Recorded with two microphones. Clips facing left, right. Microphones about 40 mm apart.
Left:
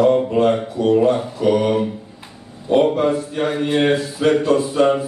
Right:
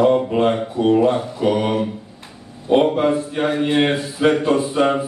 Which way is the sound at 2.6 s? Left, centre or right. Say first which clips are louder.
Even; centre.